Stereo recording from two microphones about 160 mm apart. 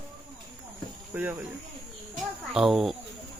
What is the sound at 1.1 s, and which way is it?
Speech, 10° right (ahead or behind).